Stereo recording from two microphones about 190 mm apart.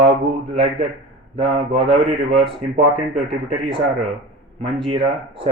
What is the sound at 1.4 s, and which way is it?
Speech, 25° right (ahead or behind).